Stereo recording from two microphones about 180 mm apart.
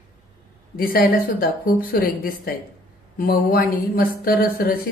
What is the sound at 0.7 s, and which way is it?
Speech, 55° left (ahead or behind).